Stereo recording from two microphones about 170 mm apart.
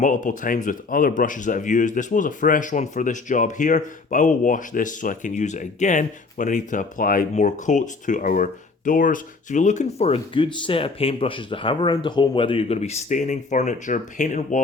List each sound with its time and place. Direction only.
0.0 s speech: 50° left (ahead or behind)